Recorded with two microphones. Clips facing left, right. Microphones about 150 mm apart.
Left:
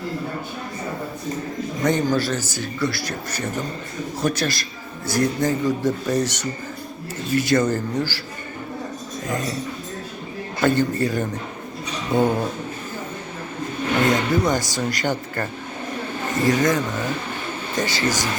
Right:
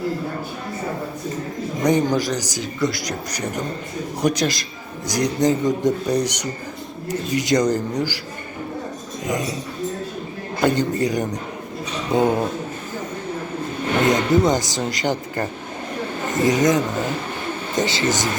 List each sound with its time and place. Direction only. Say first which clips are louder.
1.8 s speech: right 2 dB; 15° right (ahead or behind)
10.6 s speech: even; 15° right (ahead or behind)
14.1 s speech: right 6 dB; 20° right (ahead or behind)
16.5 s speech: right 2 dB; 20° right (ahead or behind)